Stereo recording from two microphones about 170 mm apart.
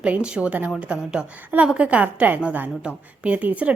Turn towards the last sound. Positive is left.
turn(degrees=-10)  # may be behind; listen again after turning